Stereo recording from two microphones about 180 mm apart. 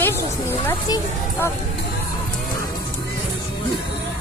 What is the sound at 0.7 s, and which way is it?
Speech, 15° left (ahead or behind).